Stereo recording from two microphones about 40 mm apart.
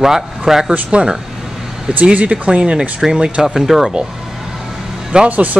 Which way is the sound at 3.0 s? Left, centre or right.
Centre.